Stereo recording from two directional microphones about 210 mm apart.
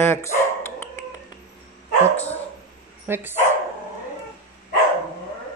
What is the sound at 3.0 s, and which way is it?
Bow-wow, 10° right (ahead or behind).